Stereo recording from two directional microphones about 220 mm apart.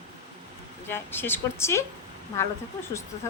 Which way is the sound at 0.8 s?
10° left (ahead or behind).